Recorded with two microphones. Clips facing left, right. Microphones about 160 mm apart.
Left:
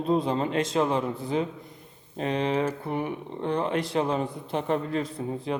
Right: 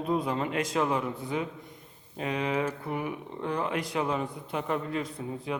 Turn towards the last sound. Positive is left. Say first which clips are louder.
# left 4 dB
turn(degrees=30)  # may be behind; listen again after turning